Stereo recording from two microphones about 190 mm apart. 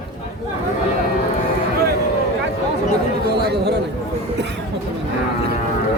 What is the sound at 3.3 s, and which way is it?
Chatter, 60° right (ahead or behind).